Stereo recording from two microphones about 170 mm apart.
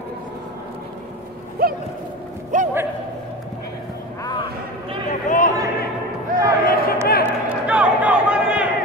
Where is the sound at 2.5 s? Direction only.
45° right (ahead or behind).